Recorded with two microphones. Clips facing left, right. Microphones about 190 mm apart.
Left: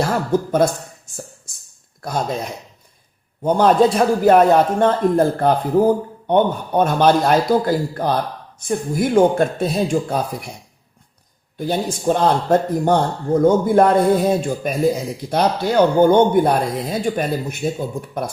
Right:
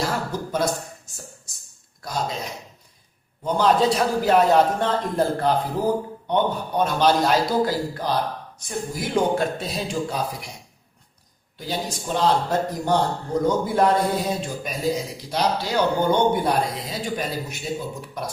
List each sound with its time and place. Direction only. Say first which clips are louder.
0.0 s speech: left 7 dB; 55° left (ahead or behind)
2.0 s a man's voice: left 5 dB; 55° left (ahead or behind)
11.5 s a man's voice: left 7 dB; 55° left (ahead or behind)